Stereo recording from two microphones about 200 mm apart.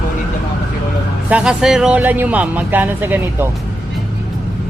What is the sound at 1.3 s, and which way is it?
Speech, 5° right (ahead or behind).